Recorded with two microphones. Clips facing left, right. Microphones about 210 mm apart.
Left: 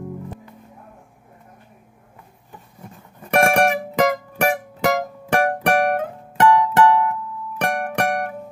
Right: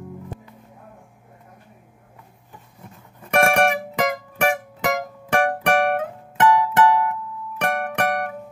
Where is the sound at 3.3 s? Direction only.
35° left (ahead or behind).